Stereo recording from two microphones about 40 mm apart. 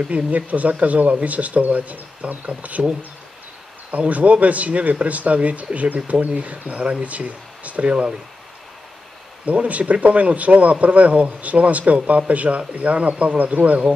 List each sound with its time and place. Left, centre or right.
0.0 s a man's voice: right
7.9 s speech: right
9.5 s a man's voice: right
13.4 s a man's voice: right